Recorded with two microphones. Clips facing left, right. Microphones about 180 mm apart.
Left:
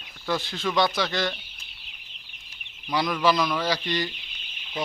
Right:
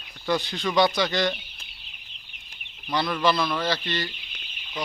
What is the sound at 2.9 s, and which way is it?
Speech, 10° left (ahead or behind).